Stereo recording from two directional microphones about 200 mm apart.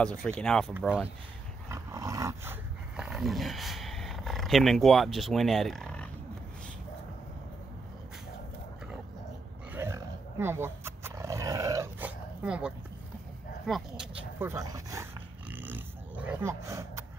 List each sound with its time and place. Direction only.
0.2 s speech: 5° left (ahead or behind)
0.7 s speech: 5° right (ahead or behind)
9.7 s roar: 10° right (ahead or behind)
13.7 s speech: centre (ahead or behind)
15.5 s a sound: 10° right (ahead or behind)